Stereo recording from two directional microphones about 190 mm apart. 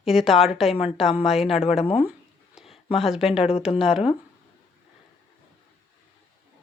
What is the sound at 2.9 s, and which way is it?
Speech, centre (ahead or behind).